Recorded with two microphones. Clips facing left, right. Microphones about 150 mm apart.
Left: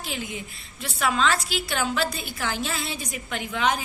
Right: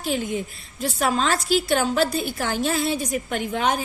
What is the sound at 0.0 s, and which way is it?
Speech, 45° right (ahead or behind).